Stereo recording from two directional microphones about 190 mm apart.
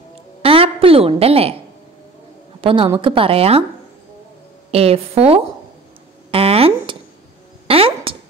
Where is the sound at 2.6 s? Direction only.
25° right (ahead or behind).